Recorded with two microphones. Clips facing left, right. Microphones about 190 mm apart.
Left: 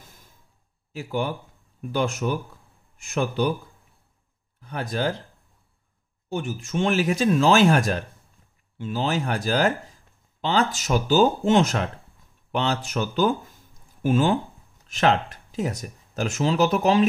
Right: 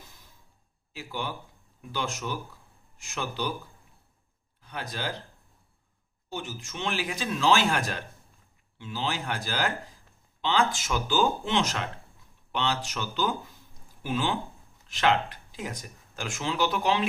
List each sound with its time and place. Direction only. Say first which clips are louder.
0.9 s speech: left 8 dB; 45° left (ahead or behind)
4.6 s speech: left 8 dB; 50° left (ahead or behind)
6.2 s speech: left 8 dB; 50° left (ahead or behind)